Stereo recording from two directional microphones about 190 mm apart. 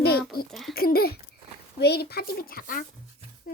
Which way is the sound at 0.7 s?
50° left (ahead or behind).